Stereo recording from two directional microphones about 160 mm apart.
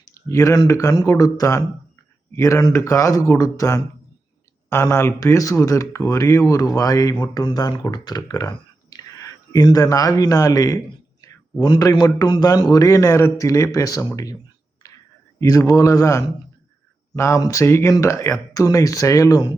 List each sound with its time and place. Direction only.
0.0 s speech: 20° left (ahead or behind)
15.4 s speech: 20° left (ahead or behind)